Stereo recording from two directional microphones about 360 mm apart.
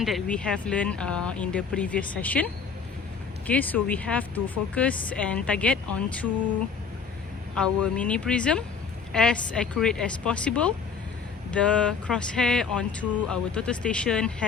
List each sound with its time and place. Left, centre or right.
0.0 s speech: centre
7.5 s speech: centre